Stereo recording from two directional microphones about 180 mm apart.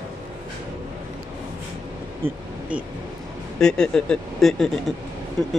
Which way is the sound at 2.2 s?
30° right (ahead or behind).